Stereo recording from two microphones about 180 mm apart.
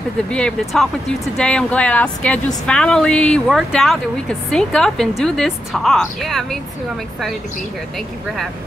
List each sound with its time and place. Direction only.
0.3 s speech: 5° left (ahead or behind)